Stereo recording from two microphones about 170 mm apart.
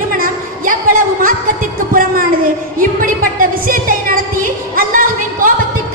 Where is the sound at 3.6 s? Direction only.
55° right (ahead or behind).